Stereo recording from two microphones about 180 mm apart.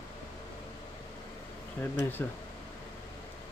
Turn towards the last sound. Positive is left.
turn(degrees=10)  # may be behind; listen again after turning